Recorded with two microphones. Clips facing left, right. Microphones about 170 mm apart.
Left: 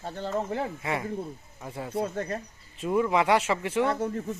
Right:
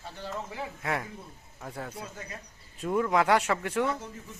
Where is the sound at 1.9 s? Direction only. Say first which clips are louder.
Left 12 dB; 60° left (ahead or behind).